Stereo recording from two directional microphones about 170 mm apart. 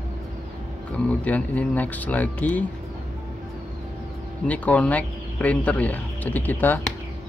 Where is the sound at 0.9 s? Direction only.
10° left (ahead or behind).